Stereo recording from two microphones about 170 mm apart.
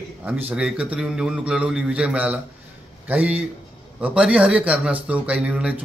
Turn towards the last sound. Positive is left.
turn(degrees=-5)  # may be behind; listen again after turning